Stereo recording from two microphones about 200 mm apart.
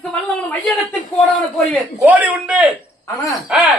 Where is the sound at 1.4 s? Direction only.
Centre (ahead or behind).